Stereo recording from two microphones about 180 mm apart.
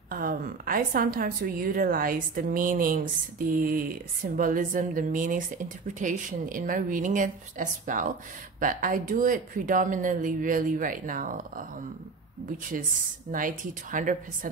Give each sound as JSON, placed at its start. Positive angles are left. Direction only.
{"t": 0.1, "sound": "a woman's voice", "side_deg": -50}
{"t": 13.3, "sound": "a woman's voice", "side_deg": -50}